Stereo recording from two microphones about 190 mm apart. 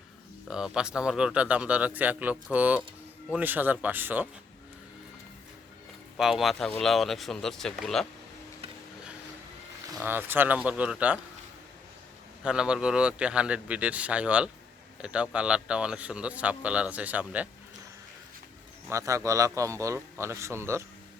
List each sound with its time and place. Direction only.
0.4 s speech: 5° right (ahead or behind)
6.1 s a man's voice: centre (ahead or behind)
10.0 s speech: 10° right (ahead or behind)
12.4 s a man's voice: 5° right (ahead or behind)
18.9 s speech: 15° right (ahead or behind)